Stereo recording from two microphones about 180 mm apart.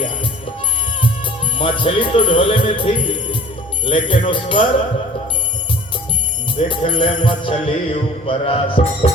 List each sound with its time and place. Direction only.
1.5 s music: 30° left (ahead or behind)
6.7 s music: 25° left (ahead or behind)